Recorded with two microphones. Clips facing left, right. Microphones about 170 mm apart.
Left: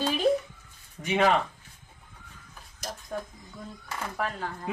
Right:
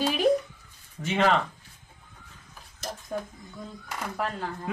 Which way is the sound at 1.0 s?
15° left (ahead or behind).